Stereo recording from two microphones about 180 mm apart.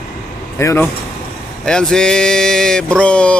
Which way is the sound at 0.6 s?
15° left (ahead or behind).